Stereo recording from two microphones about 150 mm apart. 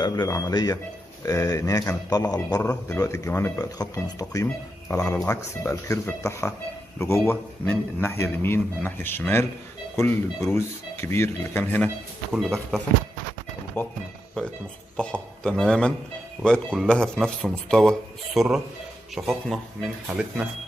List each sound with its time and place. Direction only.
0.0 s a man's voice: 25° left (ahead or behind)
12.3 s speech: centre (ahead or behind)
13.8 s a man's voice: 15° left (ahead or behind)
15.0 s speech: 5° left (ahead or behind)